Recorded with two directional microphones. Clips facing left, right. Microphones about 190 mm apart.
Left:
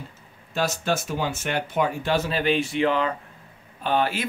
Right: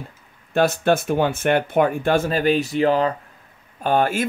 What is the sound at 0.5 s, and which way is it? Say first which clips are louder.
Speech: right 7 dB; 55° right (ahead or behind).